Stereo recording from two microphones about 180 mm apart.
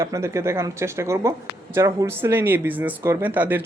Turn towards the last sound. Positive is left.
turn(degrees=-10)  # may be behind; listen again after turning